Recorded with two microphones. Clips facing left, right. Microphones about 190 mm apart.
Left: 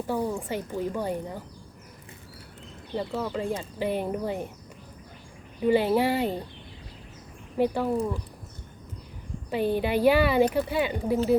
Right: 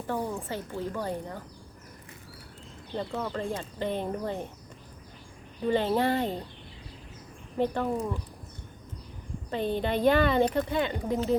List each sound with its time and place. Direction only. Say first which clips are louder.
0.1 s speech: left 2 dB; 15° left (ahead or behind)
2.9 s speech: left 3 dB; 5° left (ahead or behind)
5.6 s speech: left 3 dB; 10° left (ahead or behind)
7.6 s speech: left 3 dB; 10° left (ahead or behind)
9.5 s speech: left 3 dB; 10° left (ahead or behind)